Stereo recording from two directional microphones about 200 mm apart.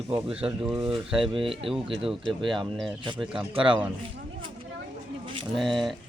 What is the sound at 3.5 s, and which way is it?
Speech, 25° right (ahead or behind).